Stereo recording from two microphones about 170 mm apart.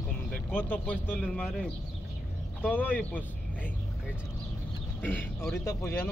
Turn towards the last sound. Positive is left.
turn(degrees=15)  # may be behind; listen again after turning